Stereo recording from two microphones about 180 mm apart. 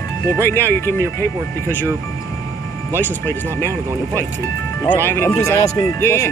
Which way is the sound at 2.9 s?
15° left (ahead or behind).